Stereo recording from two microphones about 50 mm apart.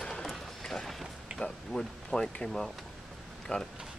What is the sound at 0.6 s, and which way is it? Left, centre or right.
Run, centre.